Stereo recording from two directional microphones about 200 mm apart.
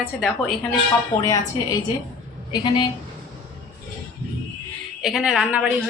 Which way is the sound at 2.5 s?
20° left (ahead or behind).